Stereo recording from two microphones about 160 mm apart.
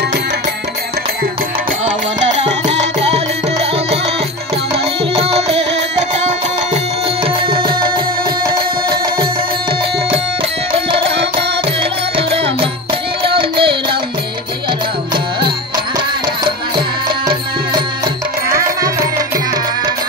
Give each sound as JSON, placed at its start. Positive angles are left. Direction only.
{"t": 2.7, "sound": "music", "side_deg": -90}
{"t": 4.7, "sound": "music", "side_deg": -40}
{"t": 7.2, "sound": "music", "side_deg": -35}
{"t": 11.3, "sound": "music", "side_deg": -35}